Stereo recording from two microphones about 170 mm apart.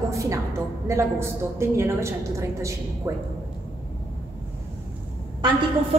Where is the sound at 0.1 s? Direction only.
20° right (ahead or behind).